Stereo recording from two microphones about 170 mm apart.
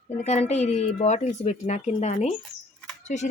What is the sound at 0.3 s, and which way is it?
A woman's voice, 40° left (ahead or behind).